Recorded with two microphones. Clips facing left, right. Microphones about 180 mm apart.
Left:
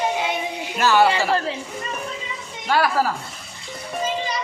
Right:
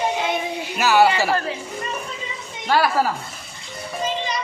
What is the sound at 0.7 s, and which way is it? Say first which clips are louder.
Speech: right 1 dB; 10° right (ahead or behind).